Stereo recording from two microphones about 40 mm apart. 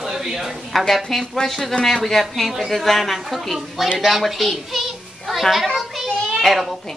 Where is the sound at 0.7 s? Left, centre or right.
Centre.